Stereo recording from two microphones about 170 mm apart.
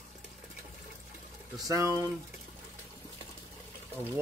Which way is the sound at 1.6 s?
20° right (ahead or behind).